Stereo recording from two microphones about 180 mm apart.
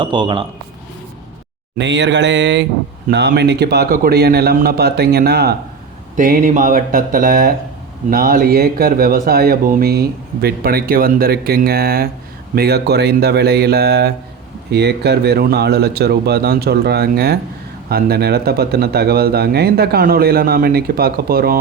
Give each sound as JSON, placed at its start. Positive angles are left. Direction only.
{"t": 0.0, "sound": "a man's voice", "side_deg": -25}
{"t": 1.8, "sound": "mantra", "side_deg": -80}
{"t": 3.1, "sound": "speech", "side_deg": -70}
{"t": 6.1, "sound": "speech", "side_deg": -50}